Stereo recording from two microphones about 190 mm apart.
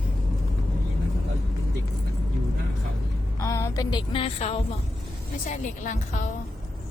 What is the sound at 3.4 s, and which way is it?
Music, 15° left (ahead or behind).